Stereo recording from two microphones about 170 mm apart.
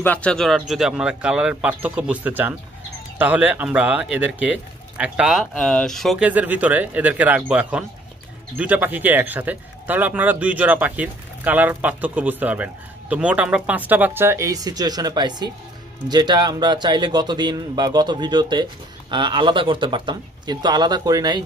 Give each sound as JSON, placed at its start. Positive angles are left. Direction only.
{"t": 0.0, "sound": "speech", "side_deg": 10}